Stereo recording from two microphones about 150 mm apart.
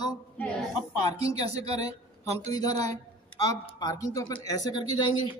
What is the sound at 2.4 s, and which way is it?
A man's voice, 25° left (ahead or behind).